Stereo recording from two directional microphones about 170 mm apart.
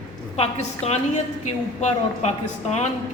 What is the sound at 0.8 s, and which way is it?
A man's voice, 40° left (ahead or behind).